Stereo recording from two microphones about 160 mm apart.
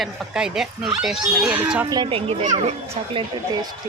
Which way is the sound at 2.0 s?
35° right (ahead or behind).